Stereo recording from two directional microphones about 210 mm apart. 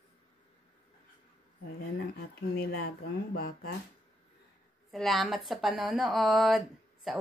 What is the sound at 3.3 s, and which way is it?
Speech, 45° left (ahead or behind).